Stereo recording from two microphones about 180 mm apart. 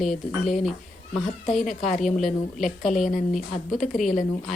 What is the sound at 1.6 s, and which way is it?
Speech, 45° left (ahead or behind).